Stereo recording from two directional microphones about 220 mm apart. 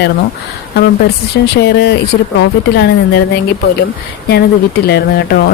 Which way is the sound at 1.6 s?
50° left (ahead or behind).